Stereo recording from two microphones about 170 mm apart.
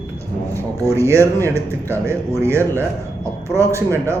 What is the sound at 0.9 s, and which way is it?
A man's voice, 15° right (ahead or behind).